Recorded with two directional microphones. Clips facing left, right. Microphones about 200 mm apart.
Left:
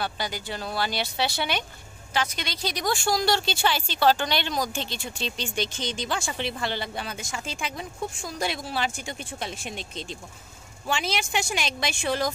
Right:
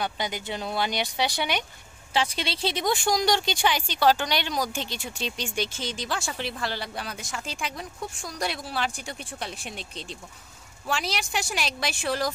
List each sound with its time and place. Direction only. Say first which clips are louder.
0.0 s speech: right 1 dB; 20° right (ahead or behind)
2.1 s a woman's voice: right 2 dB; 30° right (ahead or behind); by 12.3 s centre (ahead or behind)